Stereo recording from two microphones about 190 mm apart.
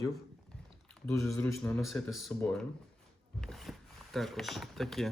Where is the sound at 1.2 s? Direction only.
Centre (ahead or behind).